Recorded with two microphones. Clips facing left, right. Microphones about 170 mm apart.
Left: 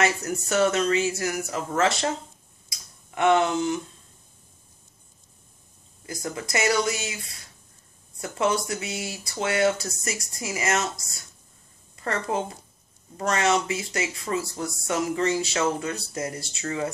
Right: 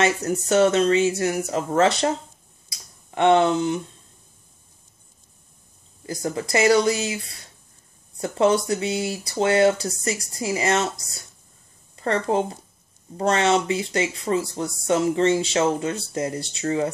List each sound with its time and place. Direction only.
0.0 s speech: 30° right (ahead or behind)
3.2 s speech: 30° right (ahead or behind)
6.0 s a woman's voice: 30° right (ahead or behind)